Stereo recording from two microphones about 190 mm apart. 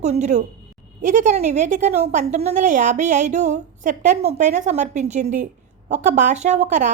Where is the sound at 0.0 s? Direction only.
40° right (ahead or behind).